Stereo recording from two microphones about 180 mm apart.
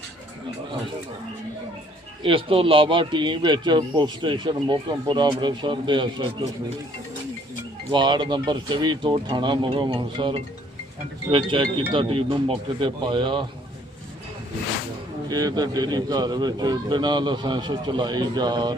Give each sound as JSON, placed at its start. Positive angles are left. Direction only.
{"t": 2.2, "sound": "speech", "side_deg": -30}
{"t": 7.9, "sound": "speech", "side_deg": -25}
{"t": 15.3, "sound": "speech", "side_deg": -20}